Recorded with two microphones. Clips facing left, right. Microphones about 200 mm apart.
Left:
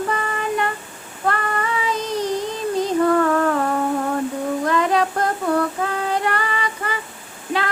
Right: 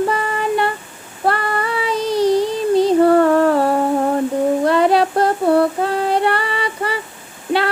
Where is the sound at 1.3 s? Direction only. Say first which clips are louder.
Right 3 dB; 35° right (ahead or behind).